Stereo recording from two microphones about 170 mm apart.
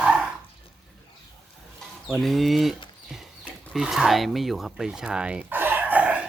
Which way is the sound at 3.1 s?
Centre (ahead or behind).